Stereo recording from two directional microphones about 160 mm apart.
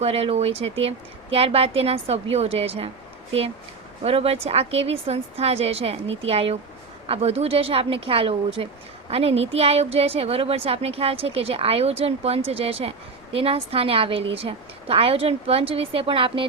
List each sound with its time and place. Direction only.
0.0 s a woman's voice: 40° right (ahead or behind)
4.0 s a woman's voice: 40° right (ahead or behind)